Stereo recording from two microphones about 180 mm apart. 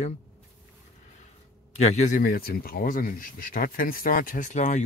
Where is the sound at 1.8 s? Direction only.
45° left (ahead or behind).